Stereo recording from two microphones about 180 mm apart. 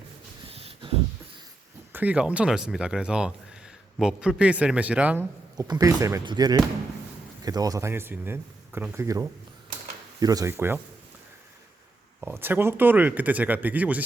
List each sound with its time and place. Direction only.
0.5 s a sound: 30° right (ahead or behind)
1.9 s speech: 10° right (ahead or behind)
5.5 s speech: 20° right (ahead or behind)
12.2 s speech: 10° right (ahead or behind)